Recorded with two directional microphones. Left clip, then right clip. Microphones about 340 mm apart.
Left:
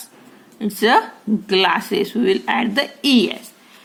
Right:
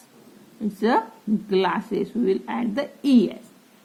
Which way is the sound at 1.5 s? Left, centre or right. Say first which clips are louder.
Left 6 dB; centre.